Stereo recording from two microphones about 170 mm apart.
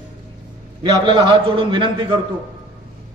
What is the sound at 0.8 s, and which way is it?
A man's voice, 30° right (ahead or behind).